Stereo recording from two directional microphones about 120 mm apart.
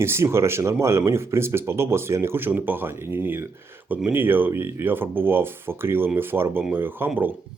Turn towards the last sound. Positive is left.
turn(degrees=-15)  # may be behind; listen again after turning